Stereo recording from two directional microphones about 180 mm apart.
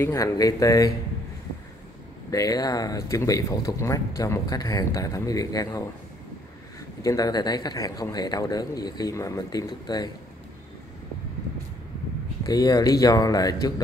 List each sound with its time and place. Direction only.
0.0 s speech: 15° left (ahead or behind)
2.3 s speech: 20° left (ahead or behind)
7.0 s speech: 20° left (ahead or behind)
12.4 s speech: 20° left (ahead or behind)